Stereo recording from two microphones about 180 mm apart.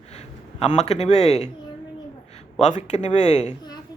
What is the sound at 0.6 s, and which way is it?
Speech, 40° left (ahead or behind).